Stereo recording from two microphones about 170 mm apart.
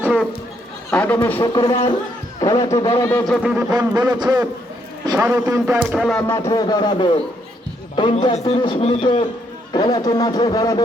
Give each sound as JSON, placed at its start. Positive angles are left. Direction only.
{"t": 0.0, "sound": "speech", "side_deg": -5}
{"t": 0.9, "sound": "a man's voice", "side_deg": 10}
{"t": 1.4, "sound": "a man's voice", "side_deg": 25}
{"t": 3.4, "sound": "speech", "side_deg": -10}
{"t": 3.7, "sound": "a man's voice", "side_deg": -25}
{"t": 5.8, "sound": "speech", "side_deg": -5}
{"t": 6.2, "sound": "a man's voice", "side_deg": 20}
{"t": 9.7, "sound": "speech", "side_deg": 25}